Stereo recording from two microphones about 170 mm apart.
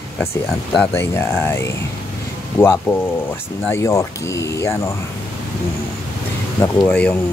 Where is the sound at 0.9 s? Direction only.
15° left (ahead or behind).